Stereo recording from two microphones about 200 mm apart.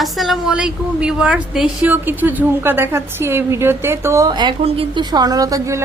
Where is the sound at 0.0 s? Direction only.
Centre (ahead or behind).